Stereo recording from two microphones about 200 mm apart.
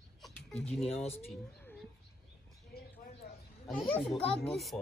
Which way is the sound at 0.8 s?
30° left (ahead or behind).